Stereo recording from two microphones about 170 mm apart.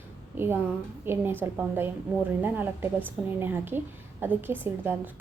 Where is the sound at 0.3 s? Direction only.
15° right (ahead or behind).